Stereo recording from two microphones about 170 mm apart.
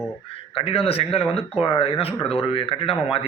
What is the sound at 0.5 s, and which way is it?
Speech, 35° left (ahead or behind).